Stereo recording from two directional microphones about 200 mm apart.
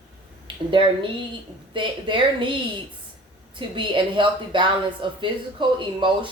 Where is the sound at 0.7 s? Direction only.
25° right (ahead or behind).